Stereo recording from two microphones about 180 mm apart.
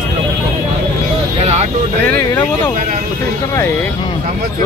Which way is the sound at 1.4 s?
35° right (ahead or behind).